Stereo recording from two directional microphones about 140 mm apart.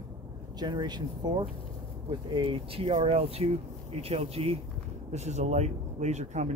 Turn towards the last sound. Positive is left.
turn(degrees=-55)  # may be behind; listen again after turning